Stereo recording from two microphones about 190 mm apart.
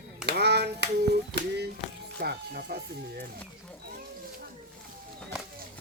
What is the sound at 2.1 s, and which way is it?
Speech, 55° right (ahead or behind).